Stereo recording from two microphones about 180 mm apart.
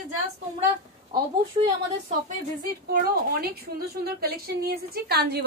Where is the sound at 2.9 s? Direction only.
60° right (ahead or behind).